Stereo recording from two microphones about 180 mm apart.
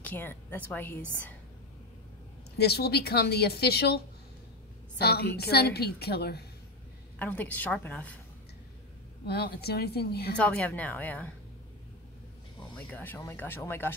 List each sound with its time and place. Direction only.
0.0 s a woman's voice: 10° left (ahead or behind)
2.5 s a woman's voice: 65° left (ahead or behind)
7.2 s a woman's voice: 10° left (ahead or behind)
9.2 s a woman's voice: 60° left (ahead or behind)
10.3 s a woman's voice: 5° left (ahead or behind)
12.7 s a woman's voice: 5° left (ahead or behind)